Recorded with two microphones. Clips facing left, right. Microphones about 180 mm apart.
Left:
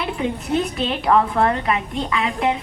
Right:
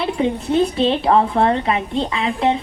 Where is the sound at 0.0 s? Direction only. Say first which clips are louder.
Right 4 dB; 30° right (ahead or behind).